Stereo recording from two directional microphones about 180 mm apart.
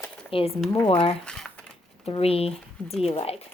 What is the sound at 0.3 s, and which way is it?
Speech, 30° left (ahead or behind).